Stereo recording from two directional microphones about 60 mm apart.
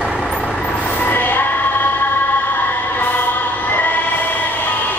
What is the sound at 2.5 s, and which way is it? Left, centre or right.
Choir, left.